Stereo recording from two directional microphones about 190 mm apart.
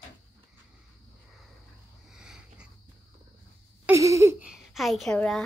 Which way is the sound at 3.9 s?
15° right (ahead or behind).